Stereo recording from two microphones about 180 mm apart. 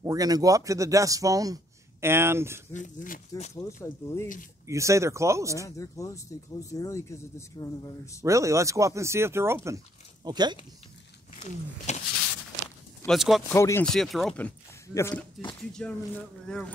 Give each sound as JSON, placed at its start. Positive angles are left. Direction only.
{"t": 0.0, "sound": "a man's voice", "side_deg": -20}
{"t": 2.7, "sound": "speech", "side_deg": 45}
{"t": 3.6, "sound": "speech", "side_deg": 15}
{"t": 4.6, "sound": "speech", "side_deg": -15}
{"t": 5.7, "sound": "speech", "side_deg": 20}
{"t": 8.2, "sound": "a man's voice", "side_deg": -15}
{"t": 11.9, "sound": "a sound", "side_deg": 40}
{"t": 13.0, "sound": "speech", "side_deg": 0}
{"t": 13.5, "sound": "speech", "side_deg": 15}
{"t": 13.8, "sound": "speech", "side_deg": 0}
{"t": 15.0, "sound": "speech", "side_deg": 15}
{"t": 15.7, "sound": "speech", "side_deg": 5}